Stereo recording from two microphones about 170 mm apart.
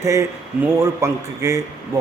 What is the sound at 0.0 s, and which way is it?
A man's voice, 15° right (ahead or behind).